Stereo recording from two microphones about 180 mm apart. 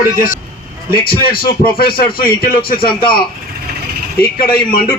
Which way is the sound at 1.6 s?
55° left (ahead or behind).